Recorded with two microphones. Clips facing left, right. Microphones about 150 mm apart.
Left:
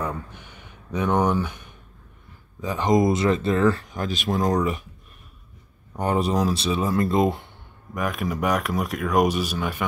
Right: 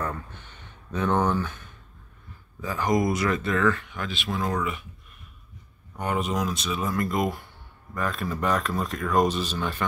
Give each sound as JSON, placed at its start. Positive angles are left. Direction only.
{"t": 0.0, "sound": "a sound", "side_deg": 10}
{"t": 2.6, "sound": "speech", "side_deg": 20}
{"t": 5.9, "sound": "speech", "side_deg": 35}
{"t": 7.9, "sound": "speech", "side_deg": 15}